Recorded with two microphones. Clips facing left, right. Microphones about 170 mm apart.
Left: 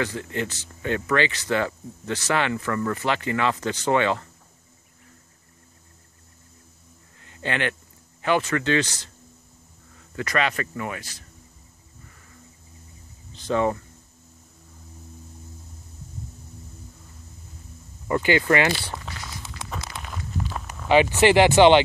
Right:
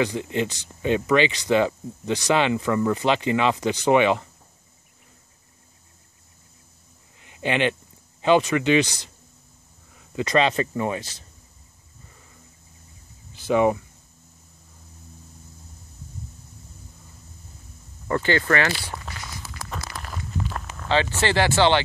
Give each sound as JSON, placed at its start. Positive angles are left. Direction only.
{"t": 0.0, "sound": "speech", "side_deg": -15}
{"t": 7.2, "sound": "a sound", "side_deg": -15}
{"t": 8.2, "sound": "speech", "side_deg": -15}
{"t": 13.3, "sound": "speech", "side_deg": -10}
{"t": 18.0, "sound": "speech", "side_deg": 15}
{"t": 20.0, "sound": "a sound", "side_deg": 0}